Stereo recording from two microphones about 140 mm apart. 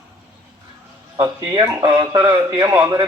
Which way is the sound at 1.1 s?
25° right (ahead or behind).